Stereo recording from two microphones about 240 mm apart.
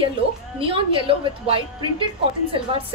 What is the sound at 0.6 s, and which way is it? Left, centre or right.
A woman's voice, right.